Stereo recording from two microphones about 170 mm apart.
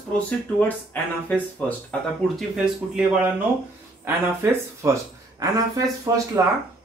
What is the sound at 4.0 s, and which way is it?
Speech, 15° right (ahead or behind).